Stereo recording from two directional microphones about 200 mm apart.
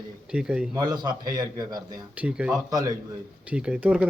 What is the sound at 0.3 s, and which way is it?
Speech, 5° right (ahead or behind).